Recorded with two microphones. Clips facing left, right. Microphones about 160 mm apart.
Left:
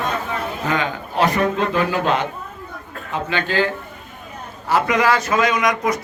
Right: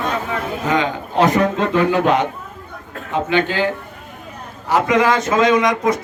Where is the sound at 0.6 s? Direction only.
20° right (ahead or behind).